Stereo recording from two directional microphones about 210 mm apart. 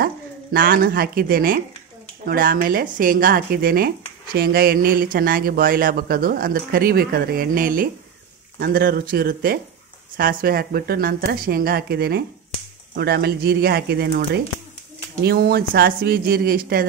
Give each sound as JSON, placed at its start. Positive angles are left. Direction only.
{"t": 0.0, "sound": "speech", "side_deg": -45}